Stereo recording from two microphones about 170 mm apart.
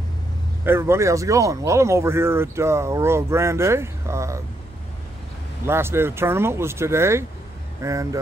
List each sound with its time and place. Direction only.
0.7 s speech: 15° right (ahead or behind)
5.7 s speech: 15° right (ahead or behind)